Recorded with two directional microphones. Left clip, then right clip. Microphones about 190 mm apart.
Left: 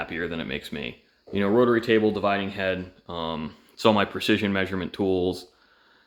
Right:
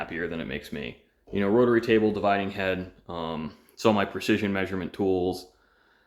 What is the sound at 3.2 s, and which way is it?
Speech, 15° left (ahead or behind).